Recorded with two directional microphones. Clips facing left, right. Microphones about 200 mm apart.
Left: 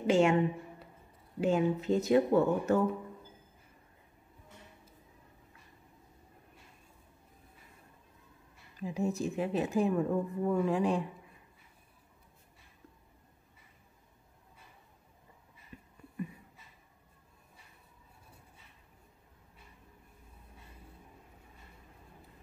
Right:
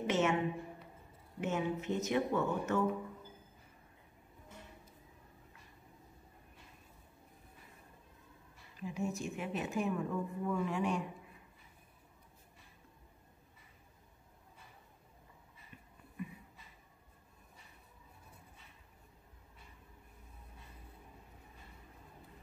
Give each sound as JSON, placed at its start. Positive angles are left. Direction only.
{"t": 0.0, "sound": "a woman's voice", "side_deg": 30}
{"t": 1.4, "sound": "a woman's voice", "side_deg": 35}
{"t": 8.8, "sound": "a woman's voice", "side_deg": 35}